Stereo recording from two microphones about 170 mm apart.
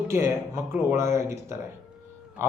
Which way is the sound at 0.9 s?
15° right (ahead or behind).